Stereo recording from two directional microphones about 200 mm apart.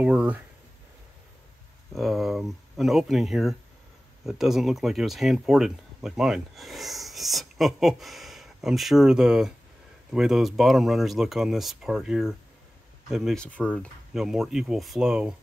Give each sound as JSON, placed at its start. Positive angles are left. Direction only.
{"t": 0.0, "sound": "speech", "side_deg": -5}
{"t": 2.0, "sound": "speech", "side_deg": 0}